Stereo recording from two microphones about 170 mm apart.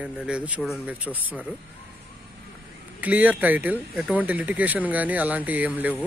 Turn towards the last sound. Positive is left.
turn(degrees=-10)  # may be behind; listen again after turning